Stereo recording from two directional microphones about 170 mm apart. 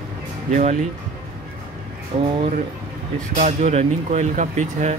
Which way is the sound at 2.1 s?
40° right (ahead or behind).